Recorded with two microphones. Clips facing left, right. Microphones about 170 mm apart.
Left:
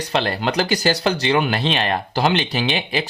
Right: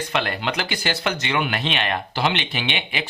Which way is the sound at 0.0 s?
35° left (ahead or behind).